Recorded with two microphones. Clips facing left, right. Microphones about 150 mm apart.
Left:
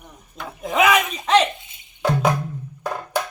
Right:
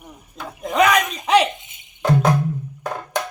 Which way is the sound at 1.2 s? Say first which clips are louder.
Right 1 dB; 10° right (ahead or behind).